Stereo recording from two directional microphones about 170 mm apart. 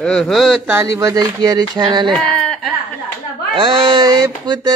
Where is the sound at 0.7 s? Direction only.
15° right (ahead or behind).